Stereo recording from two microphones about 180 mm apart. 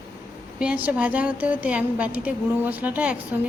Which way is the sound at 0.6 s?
10° right (ahead or behind).